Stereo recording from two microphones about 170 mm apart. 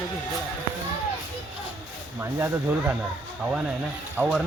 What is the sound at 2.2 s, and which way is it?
Speech, 15° right (ahead or behind).